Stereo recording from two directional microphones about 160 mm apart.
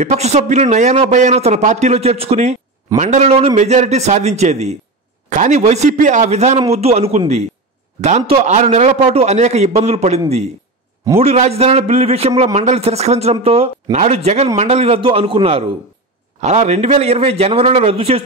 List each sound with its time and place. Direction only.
0.0 s a man's voice: 45° right (ahead or behind)